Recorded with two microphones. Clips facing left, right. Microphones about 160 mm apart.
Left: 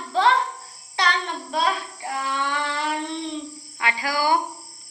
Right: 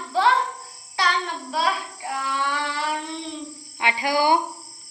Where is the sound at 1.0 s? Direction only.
5° right (ahead or behind).